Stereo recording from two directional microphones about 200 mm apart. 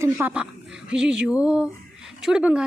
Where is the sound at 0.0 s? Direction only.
5° right (ahead or behind).